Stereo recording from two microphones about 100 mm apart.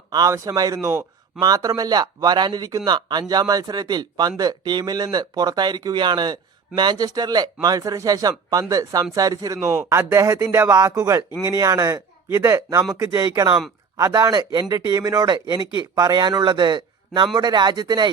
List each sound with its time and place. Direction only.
0.1 s speech: 40° right (ahead or behind)
1.4 s speech: 40° right (ahead or behind)